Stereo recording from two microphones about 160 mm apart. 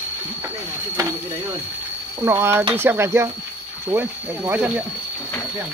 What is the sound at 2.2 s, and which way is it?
Speech, 15° right (ahead or behind).